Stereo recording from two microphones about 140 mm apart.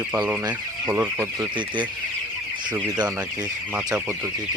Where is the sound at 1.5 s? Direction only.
35° right (ahead or behind).